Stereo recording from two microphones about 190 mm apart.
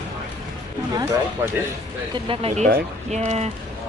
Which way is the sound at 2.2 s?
30° right (ahead or behind).